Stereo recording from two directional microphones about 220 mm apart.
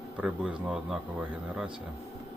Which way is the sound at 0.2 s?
5° right (ahead or behind).